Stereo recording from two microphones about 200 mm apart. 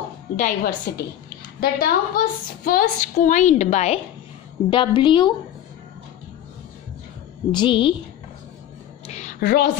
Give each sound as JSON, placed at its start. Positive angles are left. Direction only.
{"t": 0.4, "sound": "a woman's voice", "side_deg": 40}
{"t": 4.6, "sound": "a woman's voice", "side_deg": 25}
{"t": 7.5, "sound": "a woman's voice", "side_deg": 25}
{"t": 9.0, "sound": "a sound", "side_deg": 35}